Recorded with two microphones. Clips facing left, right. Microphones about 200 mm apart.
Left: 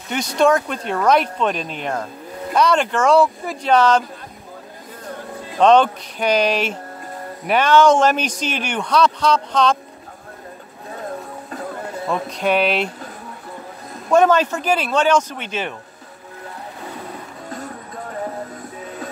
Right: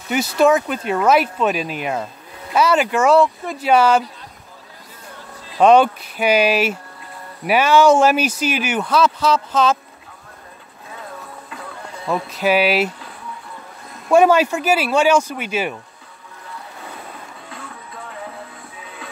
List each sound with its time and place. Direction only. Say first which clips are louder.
0.1 s speech: right 1 dB; 5° right (ahead or behind)
5.6 s speech: right 1 dB; 10° right (ahead or behind)
12.1 s speech: right 2 dB; 5° right (ahead or behind)
14.1 s speech: right 2 dB; 10° right (ahead or behind)
17.5 s music: left 8 dB; 40° left (ahead or behind)